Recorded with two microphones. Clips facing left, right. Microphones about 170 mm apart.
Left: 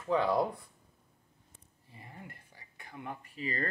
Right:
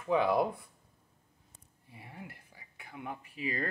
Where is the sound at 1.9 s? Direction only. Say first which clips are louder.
Right 2 dB; 5° right (ahead or behind).